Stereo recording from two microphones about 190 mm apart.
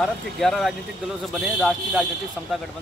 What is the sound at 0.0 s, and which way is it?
Speech, centre (ahead or behind).